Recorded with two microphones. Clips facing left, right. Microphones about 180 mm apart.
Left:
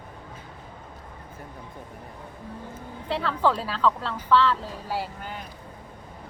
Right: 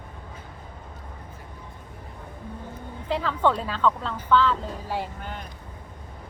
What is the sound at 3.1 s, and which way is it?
Speech, centre (ahead or behind).